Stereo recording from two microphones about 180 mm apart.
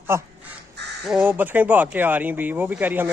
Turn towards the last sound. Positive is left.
turn(degrees=-10)  # may be behind; listen again after turning